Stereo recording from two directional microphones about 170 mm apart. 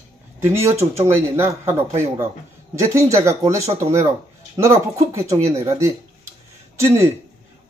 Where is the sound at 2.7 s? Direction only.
20° right (ahead or behind).